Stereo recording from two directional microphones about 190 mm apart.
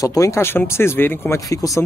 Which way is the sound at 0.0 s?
15° left (ahead or behind).